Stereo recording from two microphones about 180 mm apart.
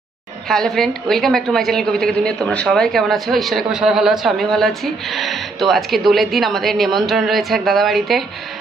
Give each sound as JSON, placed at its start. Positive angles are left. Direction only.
{"t": 0.5, "sound": "a woman's voice", "side_deg": 0}